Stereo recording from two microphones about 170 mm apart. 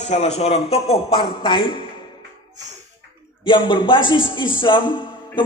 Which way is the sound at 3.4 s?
30° left (ahead or behind).